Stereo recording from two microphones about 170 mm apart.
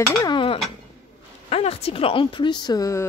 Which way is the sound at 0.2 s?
30° left (ahead or behind).